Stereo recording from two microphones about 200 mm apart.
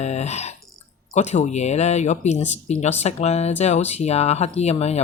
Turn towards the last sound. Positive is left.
turn(degrees=30)  # may be behind; listen again after turning